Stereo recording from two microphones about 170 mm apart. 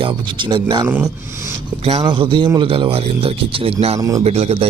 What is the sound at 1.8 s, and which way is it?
Speech, 35° right (ahead or behind).